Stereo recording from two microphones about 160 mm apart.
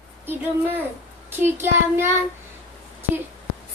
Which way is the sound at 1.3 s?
15° right (ahead or behind).